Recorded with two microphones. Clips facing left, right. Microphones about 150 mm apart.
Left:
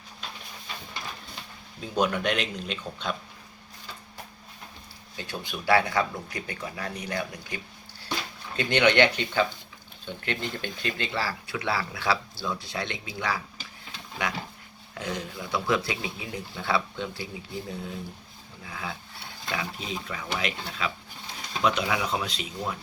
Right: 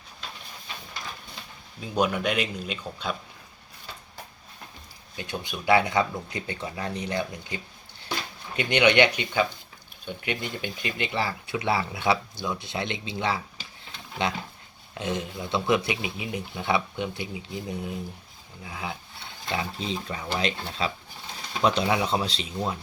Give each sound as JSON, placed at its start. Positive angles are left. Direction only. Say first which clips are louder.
{"t": 2.0, "sound": "speech", "louder": "right 1 dB", "side_deg": -10}
{"t": 5.1, "sound": "speech", "louder": "right 2 dB", "side_deg": -20}
{"t": 19.5, "sound": "speech", "louder": "right 3 dB", "side_deg": -30}